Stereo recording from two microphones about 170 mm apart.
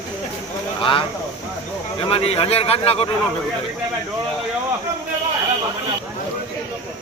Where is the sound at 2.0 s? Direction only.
35° left (ahead or behind).